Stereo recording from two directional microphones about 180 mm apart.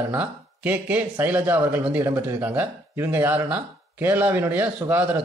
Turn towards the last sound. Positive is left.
turn(degrees=-10)  # may be behind; listen again after turning